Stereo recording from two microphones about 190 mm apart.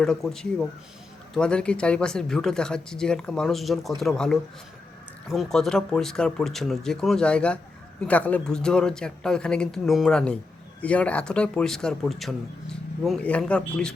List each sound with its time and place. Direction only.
0.0 s speech: 5° left (ahead or behind)